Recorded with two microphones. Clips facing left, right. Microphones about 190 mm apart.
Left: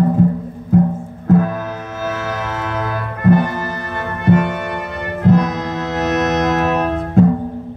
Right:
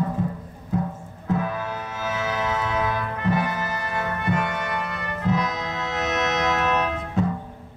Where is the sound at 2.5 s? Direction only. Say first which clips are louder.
Left 2 dB; 60° left (ahead or behind).